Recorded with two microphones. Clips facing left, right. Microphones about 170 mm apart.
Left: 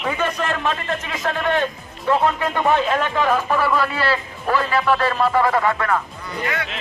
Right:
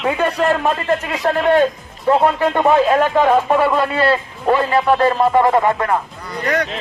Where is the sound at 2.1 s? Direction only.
25° right (ahead or behind).